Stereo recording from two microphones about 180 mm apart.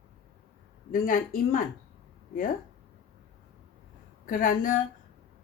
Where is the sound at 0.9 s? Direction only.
50° left (ahead or behind).